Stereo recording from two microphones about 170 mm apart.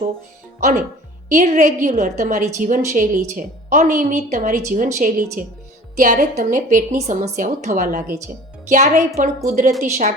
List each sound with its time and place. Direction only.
0.6 s a woman's voice: 45° right (ahead or behind)